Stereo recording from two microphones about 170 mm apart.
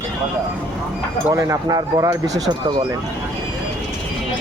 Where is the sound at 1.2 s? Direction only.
20° right (ahead or behind).